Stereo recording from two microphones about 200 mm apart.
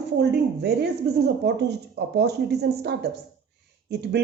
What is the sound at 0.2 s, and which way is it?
Speech, 55° right (ahead or behind).